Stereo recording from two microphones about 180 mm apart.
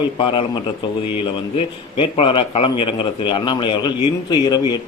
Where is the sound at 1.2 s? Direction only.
30° left (ahead or behind).